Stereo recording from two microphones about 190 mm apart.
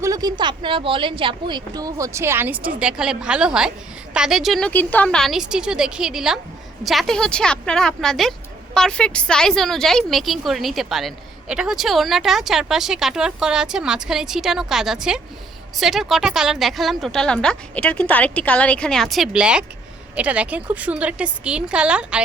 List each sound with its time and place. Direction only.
0.0 s speech: 20° right (ahead or behind)